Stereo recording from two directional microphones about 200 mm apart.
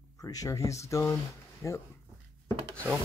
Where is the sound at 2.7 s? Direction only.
10° right (ahead or behind).